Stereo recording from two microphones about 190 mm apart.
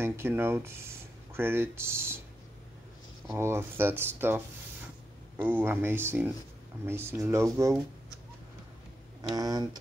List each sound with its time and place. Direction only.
0.0 s speech: 10° right (ahead or behind)
3.3 s speech: 15° right (ahead or behind)
5.4 s speech: 10° right (ahead or behind)
9.3 s speech: 20° right (ahead or behind)